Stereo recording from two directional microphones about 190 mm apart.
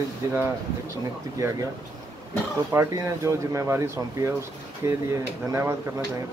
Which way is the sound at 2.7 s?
15° right (ahead or behind).